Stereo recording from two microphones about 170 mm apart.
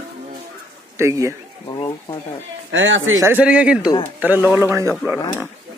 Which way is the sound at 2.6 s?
90° right.